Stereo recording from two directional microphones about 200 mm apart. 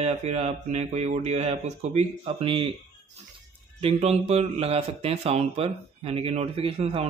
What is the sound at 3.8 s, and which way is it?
Mantra, 30° right (ahead or behind).